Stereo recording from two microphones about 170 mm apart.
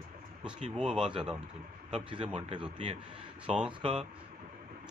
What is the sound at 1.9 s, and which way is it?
Speech, 30° right (ahead or behind).